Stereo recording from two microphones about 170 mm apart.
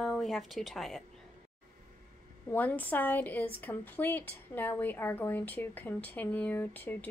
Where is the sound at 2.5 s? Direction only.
10° left (ahead or behind).